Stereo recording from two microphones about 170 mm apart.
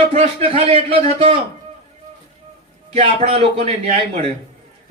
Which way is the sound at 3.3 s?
35° right (ahead or behind).